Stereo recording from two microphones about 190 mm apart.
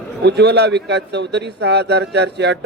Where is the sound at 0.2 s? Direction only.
60° right (ahead or behind).